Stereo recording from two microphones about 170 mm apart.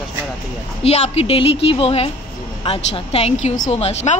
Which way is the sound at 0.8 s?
35° left (ahead or behind).